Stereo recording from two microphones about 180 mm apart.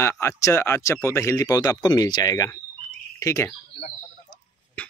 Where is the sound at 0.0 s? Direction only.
15° left (ahead or behind).